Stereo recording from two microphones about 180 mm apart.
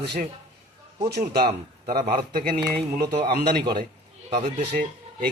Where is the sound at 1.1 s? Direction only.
60° right (ahead or behind).